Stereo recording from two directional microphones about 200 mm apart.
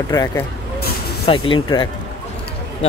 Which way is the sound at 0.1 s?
20° left (ahead or behind).